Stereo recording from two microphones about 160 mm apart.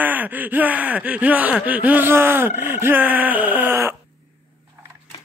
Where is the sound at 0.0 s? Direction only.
10° right (ahead or behind).